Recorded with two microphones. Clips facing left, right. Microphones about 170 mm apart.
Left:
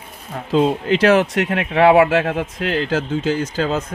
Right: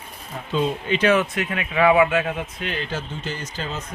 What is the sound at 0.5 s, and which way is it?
Speech, 85° left.